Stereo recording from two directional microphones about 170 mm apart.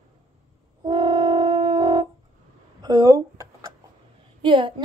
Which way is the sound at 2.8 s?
20° right (ahead or behind).